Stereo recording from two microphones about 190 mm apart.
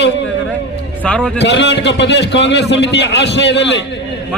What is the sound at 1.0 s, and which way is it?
Speech, 5° left (ahead or behind).